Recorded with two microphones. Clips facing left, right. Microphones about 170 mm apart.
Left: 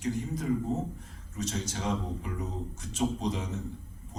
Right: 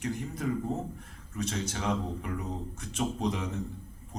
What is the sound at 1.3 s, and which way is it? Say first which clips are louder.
Speech: right 1 dB; 55° right (ahead or behind).